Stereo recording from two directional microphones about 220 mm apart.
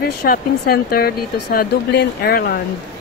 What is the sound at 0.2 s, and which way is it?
Speech, 45° left (ahead or behind).